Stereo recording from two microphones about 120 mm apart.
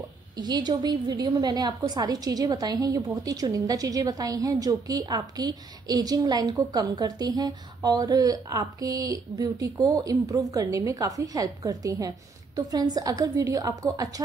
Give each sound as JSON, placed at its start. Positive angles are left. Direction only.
{"t": 0.4, "sound": "a woman's voice", "side_deg": -35}